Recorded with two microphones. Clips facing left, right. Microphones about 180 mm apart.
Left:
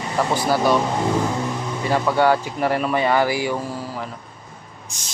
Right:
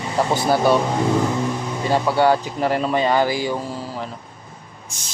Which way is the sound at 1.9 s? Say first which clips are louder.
Right 1 dB; 15° right (ahead or behind).